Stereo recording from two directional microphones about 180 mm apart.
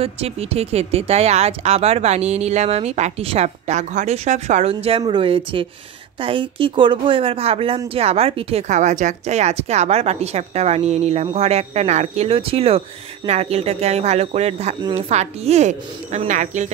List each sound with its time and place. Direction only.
0.0 s speech: 35° right (ahead or behind)
14.8 s speech: 25° right (ahead or behind)
15.0 s speech: 35° right (ahead or behind)